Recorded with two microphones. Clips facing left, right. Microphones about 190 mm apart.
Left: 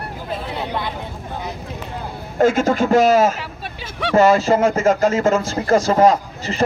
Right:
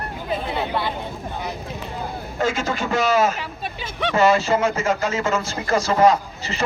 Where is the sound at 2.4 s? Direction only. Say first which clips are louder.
Left 8 dB; 55° left (ahead or behind).